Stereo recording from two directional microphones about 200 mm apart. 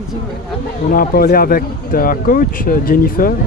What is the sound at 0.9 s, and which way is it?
Speech, 45° left (ahead or behind).